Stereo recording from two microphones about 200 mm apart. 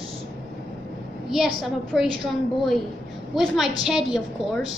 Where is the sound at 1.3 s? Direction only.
Centre (ahead or behind).